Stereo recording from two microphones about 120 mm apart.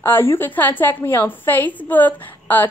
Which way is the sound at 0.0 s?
20° left (ahead or behind).